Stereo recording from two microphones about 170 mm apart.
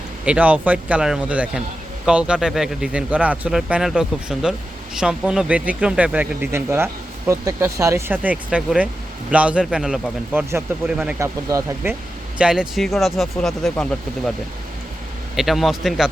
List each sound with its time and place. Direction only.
0.3 s speech: 10° right (ahead or behind)
11.2 s speech: 20° right (ahead or behind)
12.4 s speech: 5° right (ahead or behind)
15.4 s speech: centre (ahead or behind)